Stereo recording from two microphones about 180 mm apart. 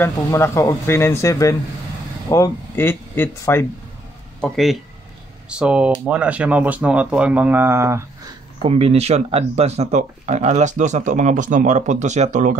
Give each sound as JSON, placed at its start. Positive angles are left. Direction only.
{"t": 0.0, "sound": "speech", "side_deg": 15}
{"t": 4.4, "sound": "speech", "side_deg": 0}
{"t": 8.6, "sound": "speech", "side_deg": -35}